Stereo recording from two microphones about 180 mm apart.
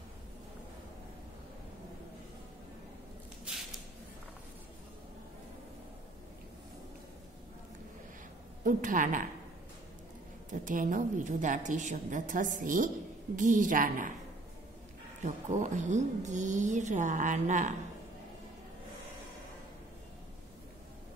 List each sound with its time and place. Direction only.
8.6 s speech: 45° right (ahead or behind)
10.5 s speech: 45° right (ahead or behind)
15.2 s speech: 45° right (ahead or behind)